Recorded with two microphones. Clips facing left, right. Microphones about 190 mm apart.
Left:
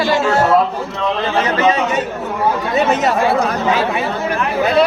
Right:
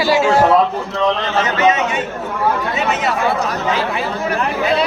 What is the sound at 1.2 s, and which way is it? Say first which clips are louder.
Speech: left 1 dB; 35° left (ahead or behind).